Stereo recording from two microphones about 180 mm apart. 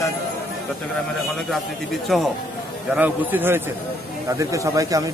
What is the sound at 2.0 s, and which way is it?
Speech, centre (ahead or behind).